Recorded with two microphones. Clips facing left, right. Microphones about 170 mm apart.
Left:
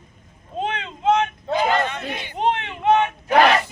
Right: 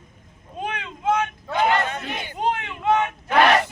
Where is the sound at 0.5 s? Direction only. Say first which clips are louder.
Left 4 dB; 25° left (ahead or behind).